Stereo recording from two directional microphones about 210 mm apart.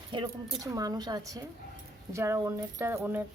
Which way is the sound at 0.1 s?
20° right (ahead or behind).